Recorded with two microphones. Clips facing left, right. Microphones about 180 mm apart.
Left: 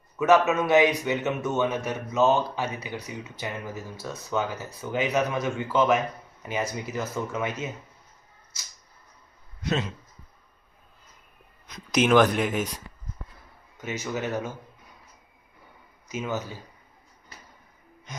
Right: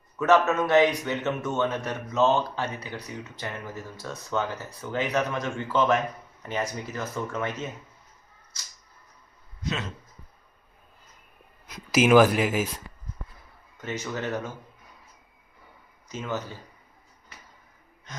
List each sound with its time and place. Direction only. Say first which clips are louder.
0.2 s a man's voice: left 1 dB; 5° left (ahead or behind)
9.6 s a man's voice: left 4 dB; 65° left (ahead or behind)
11.9 s speech: right 2 dB; 5° right (ahead or behind)
13.8 s a man's voice: left 1 dB; 10° left (ahead or behind)
16.0 s a man's voice: left 2 dB; 10° left (ahead or behind)